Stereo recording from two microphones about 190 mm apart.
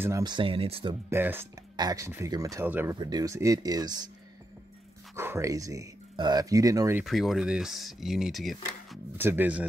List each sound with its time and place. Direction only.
0.0 s speech: 20° right (ahead or behind)
1.1 s speech: 10° right (ahead or behind)
3.0 s speech: 20° right (ahead or behind)
5.1 s speech: 15° right (ahead or behind)
7.1 s speech: centre (ahead or behind)
9.2 s speech: 10° right (ahead or behind)